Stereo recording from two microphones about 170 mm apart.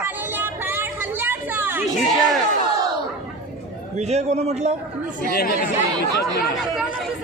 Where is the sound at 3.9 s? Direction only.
40° right (ahead or behind).